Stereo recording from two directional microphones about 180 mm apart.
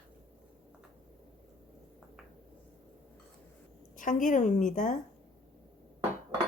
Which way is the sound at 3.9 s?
45° left (ahead or behind).